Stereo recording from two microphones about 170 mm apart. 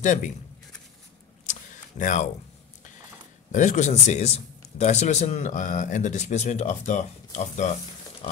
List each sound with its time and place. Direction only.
0.0 s speech: 45° left (ahead or behind)
1.4 s a sound: 50° left (ahead or behind)
3.5 s speech: 45° left (ahead or behind)